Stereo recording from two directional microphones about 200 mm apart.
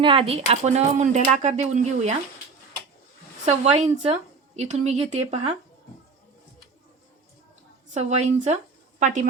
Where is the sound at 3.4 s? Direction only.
30° right (ahead or behind).